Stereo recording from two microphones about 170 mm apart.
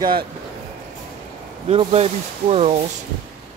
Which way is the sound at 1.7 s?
40° right (ahead or behind).